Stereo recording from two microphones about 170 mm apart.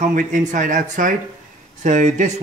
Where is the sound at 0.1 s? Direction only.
50° right (ahead or behind).